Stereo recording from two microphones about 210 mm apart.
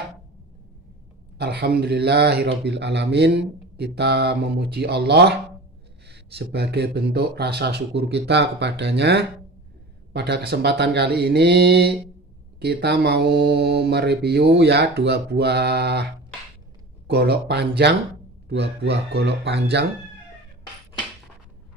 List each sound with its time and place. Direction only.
1.4 s speech: 50° right (ahead or behind)
17.1 s speech: 50° right (ahead or behind)